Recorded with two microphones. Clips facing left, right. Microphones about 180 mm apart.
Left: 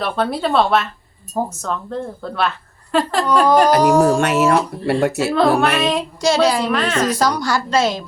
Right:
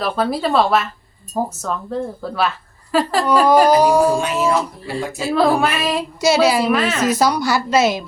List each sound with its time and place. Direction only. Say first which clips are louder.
0.0 s a woman's voice: even; centre (ahead or behind)
4.2 s speech: left 3 dB; 70° left (ahead or behind)
5.3 s a woman's voice: right 2 dB; 5° right (ahead or behind)